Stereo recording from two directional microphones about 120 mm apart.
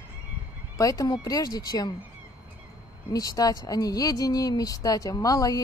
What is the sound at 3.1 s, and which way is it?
A woman's voice, 30° left (ahead or behind).